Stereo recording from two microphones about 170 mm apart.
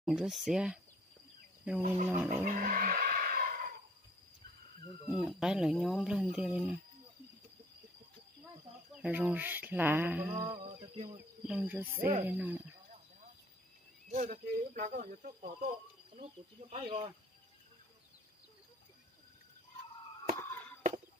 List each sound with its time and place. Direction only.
0.0 s speech: 5° right (ahead or behind)
2.0 s speech: 10° right (ahead or behind)
2.4 s music: 55° right (ahead or behind)
5.1 s speech: centre (ahead or behind)
8.9 s speech: 5° right (ahead or behind)
10.5 s a sound: 30° right (ahead or behind)
11.4 s speech: 5° right (ahead or behind)
14.1 s speech: 50° right (ahead or behind)
16.7 s a sound: 30° right (ahead or behind)
20.4 s a sound: 10° left (ahead or behind)